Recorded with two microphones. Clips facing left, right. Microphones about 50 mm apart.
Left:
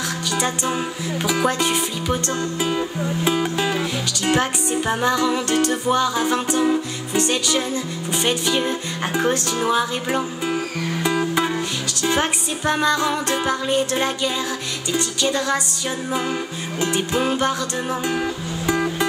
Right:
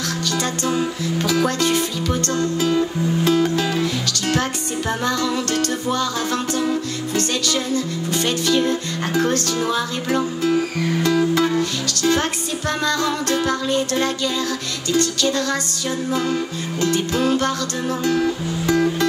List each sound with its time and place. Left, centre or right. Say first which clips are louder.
0.4 s music: right 1 dB; centre
16.8 s music: right 1 dB; centre